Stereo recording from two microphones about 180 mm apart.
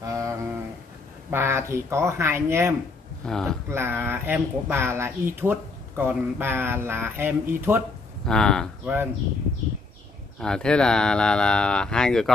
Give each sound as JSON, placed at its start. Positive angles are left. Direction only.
{"t": 0.0, "sound": "a sound", "side_deg": -15}
{"t": 1.3, "sound": "speech", "side_deg": -15}
{"t": 3.3, "sound": "speech", "side_deg": 5}
{"t": 3.7, "sound": "speech", "side_deg": -15}
{"t": 8.3, "sound": "speech", "side_deg": 5}
{"t": 8.8, "sound": "speech", "side_deg": -10}
{"t": 10.4, "sound": "speech", "side_deg": 5}